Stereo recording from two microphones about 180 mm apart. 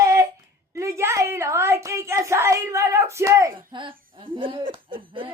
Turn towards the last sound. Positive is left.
turn(degrees=-30)  # may be behind; listen again after turning